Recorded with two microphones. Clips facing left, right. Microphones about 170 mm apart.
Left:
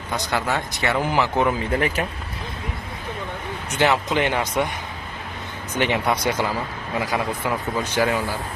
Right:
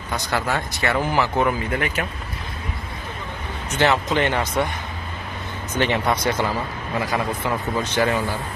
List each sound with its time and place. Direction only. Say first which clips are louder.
0.3 s a man's voice: right 1 dB; 15° left (ahead or behind)
1.7 s speech: left 2 dB; 30° left (ahead or behind)
3.7 s a man's voice: right 1 dB; 10° left (ahead or behind)
5.8 s a man's voice: even; 15° left (ahead or behind)